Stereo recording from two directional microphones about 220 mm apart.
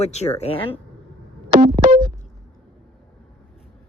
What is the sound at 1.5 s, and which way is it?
Music, 40° right (ahead or behind).